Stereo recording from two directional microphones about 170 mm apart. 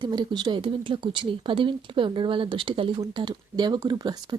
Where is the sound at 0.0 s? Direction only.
25° right (ahead or behind).